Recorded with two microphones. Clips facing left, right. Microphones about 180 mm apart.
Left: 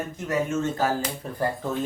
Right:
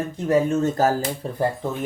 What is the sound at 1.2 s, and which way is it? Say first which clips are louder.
Speech: right 5 dB; 30° right (ahead or behind).